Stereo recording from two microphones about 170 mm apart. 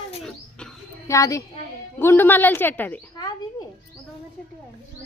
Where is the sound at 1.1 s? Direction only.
20° left (ahead or behind).